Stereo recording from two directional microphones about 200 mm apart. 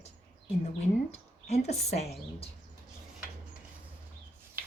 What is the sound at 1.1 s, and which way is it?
Speech, 35° left (ahead or behind).